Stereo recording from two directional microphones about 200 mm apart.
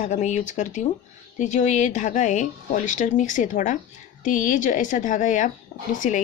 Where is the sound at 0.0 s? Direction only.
35° left (ahead or behind).